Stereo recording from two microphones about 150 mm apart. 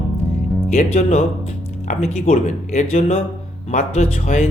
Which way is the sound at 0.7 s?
50° left (ahead or behind).